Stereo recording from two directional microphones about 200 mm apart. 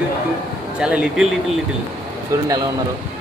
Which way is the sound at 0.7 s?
5° right (ahead or behind).